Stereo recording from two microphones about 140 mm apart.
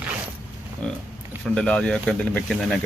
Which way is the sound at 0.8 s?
5° left (ahead or behind).